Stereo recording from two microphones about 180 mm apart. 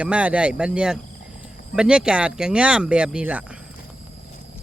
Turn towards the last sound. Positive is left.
turn(degrees=-5)  # may be behind; listen again after turning